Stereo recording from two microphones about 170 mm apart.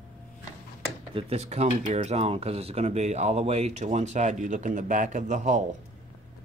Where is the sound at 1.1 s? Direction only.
35° right (ahead or behind).